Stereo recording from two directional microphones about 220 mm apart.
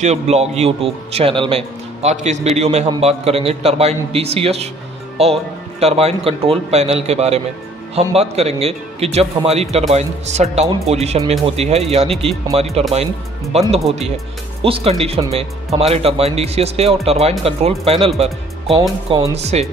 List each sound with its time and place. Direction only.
0.0 s a man's voice: 30° right (ahead or behind)